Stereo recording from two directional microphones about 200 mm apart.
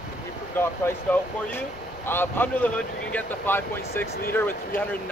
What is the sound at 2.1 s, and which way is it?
Speech, 10° left (ahead or behind).